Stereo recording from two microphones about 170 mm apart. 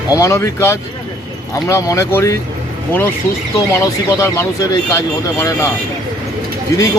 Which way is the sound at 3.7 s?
15° left (ahead or behind).